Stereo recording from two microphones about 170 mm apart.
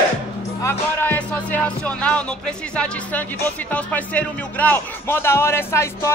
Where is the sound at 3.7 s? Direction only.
10° left (ahead or behind).